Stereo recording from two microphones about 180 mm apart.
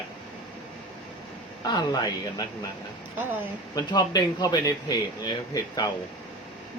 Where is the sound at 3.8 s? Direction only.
20° left (ahead or behind).